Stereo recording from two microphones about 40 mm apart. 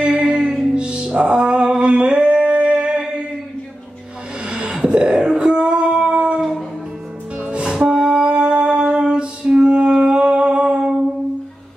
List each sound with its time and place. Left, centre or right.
0.0 s music: right
4.5 s a sound: right
5.5 s music: right
9.8 s humming: centre